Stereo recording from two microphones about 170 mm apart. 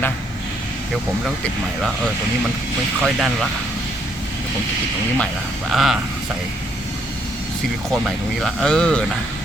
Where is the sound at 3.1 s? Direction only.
Centre (ahead or behind).